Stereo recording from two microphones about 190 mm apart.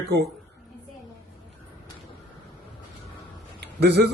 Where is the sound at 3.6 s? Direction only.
60° right (ahead or behind).